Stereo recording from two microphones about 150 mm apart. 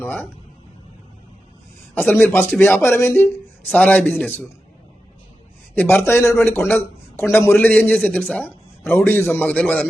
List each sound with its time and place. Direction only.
2.0 s speech: centre (ahead or behind)
2.2 s a man's voice: 15° left (ahead or behind)
5.7 s a man's voice: 15° left (ahead or behind)